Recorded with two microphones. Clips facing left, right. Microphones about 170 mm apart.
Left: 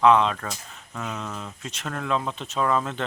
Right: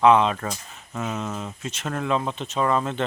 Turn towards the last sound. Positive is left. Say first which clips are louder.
# right 2 dB
turn(degrees=0)  # may be behind; listen again after turning